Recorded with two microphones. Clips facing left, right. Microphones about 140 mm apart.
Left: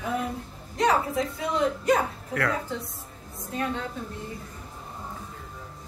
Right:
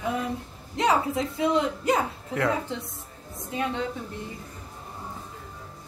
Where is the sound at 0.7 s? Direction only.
25° right (ahead or behind).